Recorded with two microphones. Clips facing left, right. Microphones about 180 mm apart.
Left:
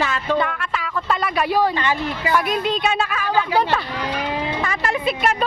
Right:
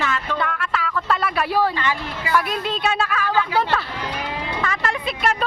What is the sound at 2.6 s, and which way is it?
Speech, 5° left (ahead or behind).